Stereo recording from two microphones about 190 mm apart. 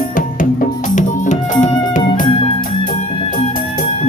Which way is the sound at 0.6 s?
40° left (ahead or behind).